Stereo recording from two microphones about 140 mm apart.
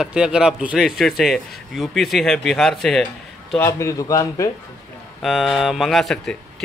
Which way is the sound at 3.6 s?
20° left (ahead or behind).